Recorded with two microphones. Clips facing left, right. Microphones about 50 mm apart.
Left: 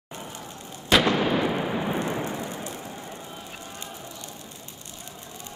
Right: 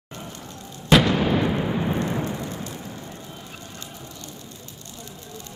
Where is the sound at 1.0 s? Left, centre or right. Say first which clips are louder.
Right 1 dB; centre.